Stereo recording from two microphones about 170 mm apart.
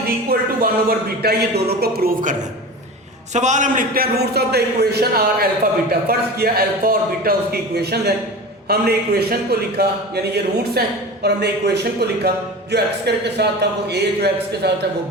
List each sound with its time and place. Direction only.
0.3 s a man's voice: 60° right (ahead or behind)
3.3 s a man's voice: 45° right (ahead or behind); by 14.8 s 70° right (ahead or behind)